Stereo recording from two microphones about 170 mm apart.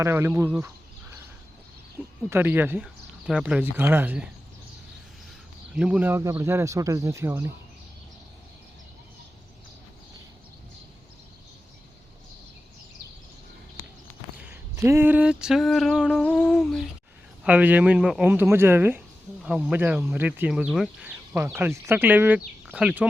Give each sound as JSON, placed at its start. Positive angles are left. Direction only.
{"t": 0.0, "sound": "speech", "side_deg": -15}
{"t": 2.0, "sound": "a sound", "side_deg": -10}
{"t": 2.3, "sound": "speech", "side_deg": -10}
{"t": 5.7, "sound": "speech", "side_deg": -5}
{"t": 14.3, "sound": "a sound", "side_deg": -10}
{"t": 17.4, "sound": "speech", "side_deg": -10}